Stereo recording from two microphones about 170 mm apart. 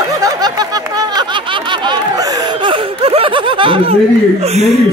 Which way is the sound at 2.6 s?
30° right (ahead or behind).